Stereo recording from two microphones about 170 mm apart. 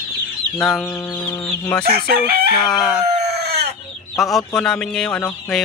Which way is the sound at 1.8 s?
65° right (ahead or behind).